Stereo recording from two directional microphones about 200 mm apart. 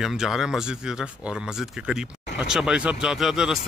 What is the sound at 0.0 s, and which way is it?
Speech, centre (ahead or behind).